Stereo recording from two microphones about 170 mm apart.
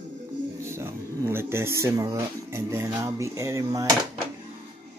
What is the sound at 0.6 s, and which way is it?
Speech, 15° right (ahead or behind).